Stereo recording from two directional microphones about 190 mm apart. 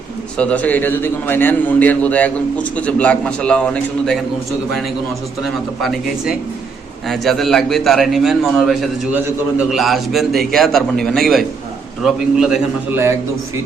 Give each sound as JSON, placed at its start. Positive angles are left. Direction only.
{"t": 0.3, "sound": "a man's voice", "side_deg": 5}
{"t": 5.4, "sound": "a man's voice", "side_deg": 0}